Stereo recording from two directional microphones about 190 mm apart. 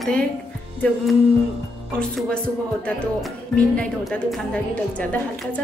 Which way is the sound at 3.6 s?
5° left (ahead or behind).